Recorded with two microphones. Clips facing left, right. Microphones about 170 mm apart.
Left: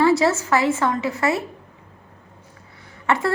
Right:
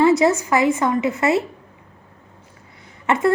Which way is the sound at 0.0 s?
20° right (ahead or behind).